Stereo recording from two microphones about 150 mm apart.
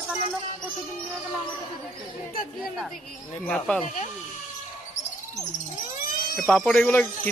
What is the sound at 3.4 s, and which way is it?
Speech, 5° left (ahead or behind).